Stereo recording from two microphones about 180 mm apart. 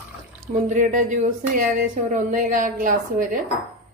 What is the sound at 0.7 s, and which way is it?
A woman's voice, 45° right (ahead or behind).